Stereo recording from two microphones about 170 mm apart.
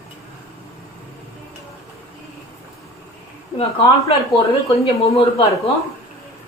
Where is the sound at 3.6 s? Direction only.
30° left (ahead or behind).